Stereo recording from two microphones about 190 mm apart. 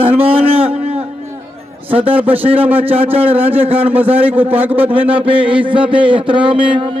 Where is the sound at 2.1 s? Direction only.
30° right (ahead or behind).